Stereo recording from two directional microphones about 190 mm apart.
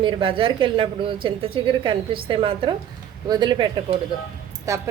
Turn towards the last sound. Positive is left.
turn(degrees=-15)  # may be behind; listen again after turning